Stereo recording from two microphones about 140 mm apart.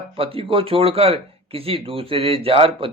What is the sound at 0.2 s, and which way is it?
Speech, 40° right (ahead or behind).